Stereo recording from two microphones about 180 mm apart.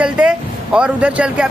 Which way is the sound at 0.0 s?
5° right (ahead or behind).